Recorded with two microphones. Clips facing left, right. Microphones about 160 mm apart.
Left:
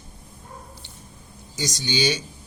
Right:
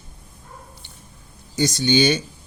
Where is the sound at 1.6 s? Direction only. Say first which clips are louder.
Right 8 dB; 55° right (ahead or behind).